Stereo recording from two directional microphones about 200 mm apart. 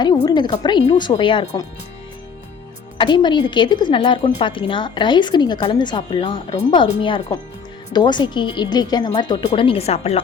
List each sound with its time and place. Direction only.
0.3 s a woman's voice: 20° left (ahead or behind)
3.0 s a woman's voice: 25° left (ahead or behind)